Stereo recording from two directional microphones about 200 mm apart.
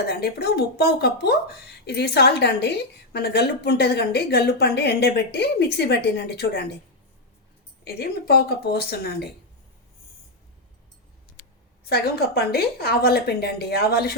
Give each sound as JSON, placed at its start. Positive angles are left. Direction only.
{"t": 0.1, "sound": "speech", "side_deg": 55}
{"t": 7.9, "sound": "a woman's voice", "side_deg": 55}
{"t": 11.9, "sound": "a woman's voice", "side_deg": 55}